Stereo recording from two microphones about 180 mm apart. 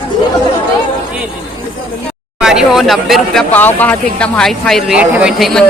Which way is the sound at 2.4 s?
5° right (ahead or behind).